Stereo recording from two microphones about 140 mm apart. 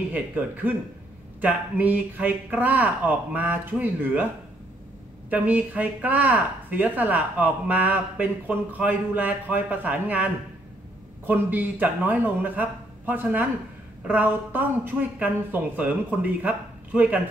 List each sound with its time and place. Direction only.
0.1 s speech: 15° right (ahead or behind)
5.3 s speech: 10° right (ahead or behind)